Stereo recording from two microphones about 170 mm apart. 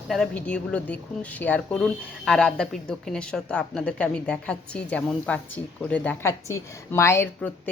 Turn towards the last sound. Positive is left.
turn(degrees=10)  # may be behind; listen again after turning